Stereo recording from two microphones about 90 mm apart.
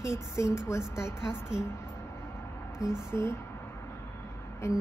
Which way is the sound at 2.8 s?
40° left (ahead or behind).